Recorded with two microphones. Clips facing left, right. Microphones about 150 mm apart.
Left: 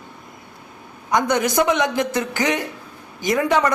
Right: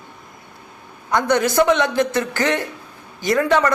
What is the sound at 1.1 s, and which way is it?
A man's voice, 15° left (ahead or behind).